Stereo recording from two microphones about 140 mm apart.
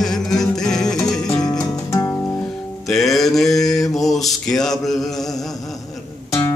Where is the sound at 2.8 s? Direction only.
Centre (ahead or behind).